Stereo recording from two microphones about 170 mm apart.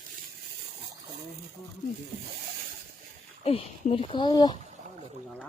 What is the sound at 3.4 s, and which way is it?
Speech, 35° left (ahead or behind).